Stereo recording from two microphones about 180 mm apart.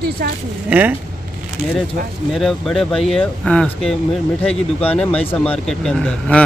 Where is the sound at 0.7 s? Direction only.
10° right (ahead or behind).